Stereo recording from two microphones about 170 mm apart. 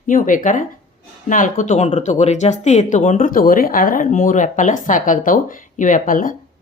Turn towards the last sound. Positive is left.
turn(degrees=55)  # may be behind; listen again after turning